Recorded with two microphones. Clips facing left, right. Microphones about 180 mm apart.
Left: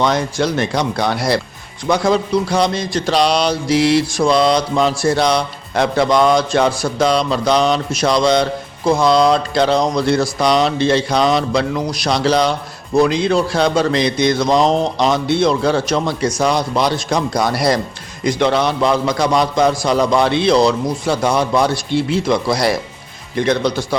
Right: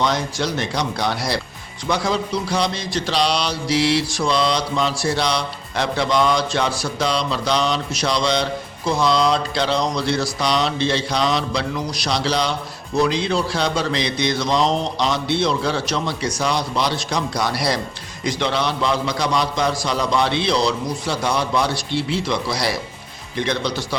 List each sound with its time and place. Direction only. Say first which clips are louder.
0.0 s mantra: left 5 dB; 55° left (ahead or behind)